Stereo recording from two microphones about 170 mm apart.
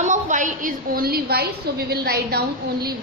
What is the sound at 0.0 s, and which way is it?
A woman's voice, 45° right (ahead or behind).